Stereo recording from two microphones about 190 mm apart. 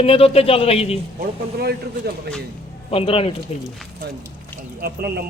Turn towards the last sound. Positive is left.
turn(degrees=-55)  # may be behind; listen again after turning